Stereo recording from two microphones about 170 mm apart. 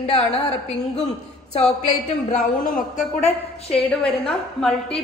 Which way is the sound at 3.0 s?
40° left (ahead or behind).